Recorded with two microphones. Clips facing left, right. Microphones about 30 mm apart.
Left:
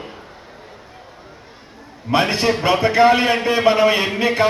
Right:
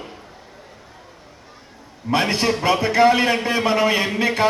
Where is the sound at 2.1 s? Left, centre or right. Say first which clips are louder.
Left 2 dB; left.